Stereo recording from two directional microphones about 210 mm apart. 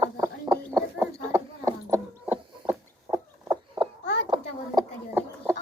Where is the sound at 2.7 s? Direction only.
15° right (ahead or behind).